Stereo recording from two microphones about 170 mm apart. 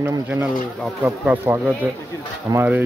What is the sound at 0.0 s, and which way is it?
Speech, 20° right (ahead or behind).